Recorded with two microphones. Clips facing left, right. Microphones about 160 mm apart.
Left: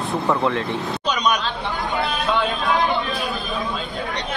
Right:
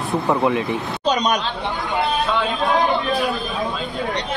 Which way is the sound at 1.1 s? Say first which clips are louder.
Right 3 dB; 40° right (ahead or behind).